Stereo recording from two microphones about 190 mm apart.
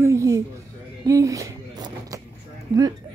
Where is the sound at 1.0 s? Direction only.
15° right (ahead or behind).